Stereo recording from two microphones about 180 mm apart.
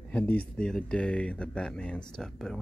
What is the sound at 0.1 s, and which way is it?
Speech, 10° left (ahead or behind).